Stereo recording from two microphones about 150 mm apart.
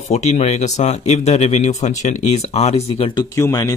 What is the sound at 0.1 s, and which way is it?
Speech, 45° left (ahead or behind).